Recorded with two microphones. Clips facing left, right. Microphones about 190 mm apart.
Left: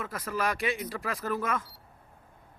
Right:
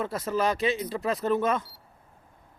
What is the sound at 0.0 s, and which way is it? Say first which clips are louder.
Speech: right 5 dB; 25° right (ahead or behind).